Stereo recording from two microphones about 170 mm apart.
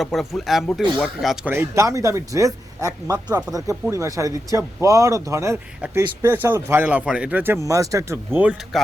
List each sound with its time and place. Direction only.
0.0 s speech: centre (ahead or behind)
1.5 s speech: 15° right (ahead or behind)